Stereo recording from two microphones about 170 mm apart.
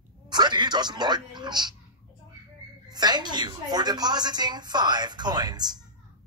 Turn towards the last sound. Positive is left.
turn(degrees=-25)  # may be behind; listen again after turning